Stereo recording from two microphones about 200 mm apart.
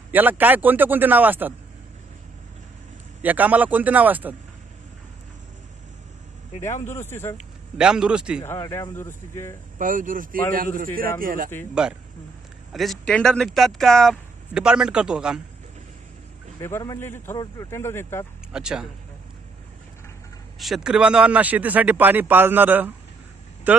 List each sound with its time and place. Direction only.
0.1 s speech: 10° right (ahead or behind)
3.2 s speech: 10° right (ahead or behind)
6.7 s speech: 35° left (ahead or behind)
7.0 s a man's voice: 10° left (ahead or behind)
7.3 s a man's voice: 5° right (ahead or behind)
8.5 s a man's voice: 15° left (ahead or behind)
9.8 s a man's voice: 40° right (ahead or behind)
11.8 s speech: 5° right (ahead or behind)
16.6 s a man's voice: 15° left (ahead or behind)
18.5 s speech: 5° right (ahead or behind)
20.5 s speech: centre (ahead or behind)